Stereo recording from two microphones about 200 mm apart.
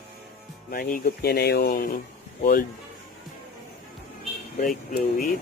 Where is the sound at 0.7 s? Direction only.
50° left (ahead or behind).